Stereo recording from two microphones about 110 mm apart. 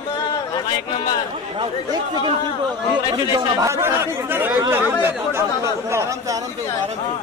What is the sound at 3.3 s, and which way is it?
Speech, 30° right (ahead or behind).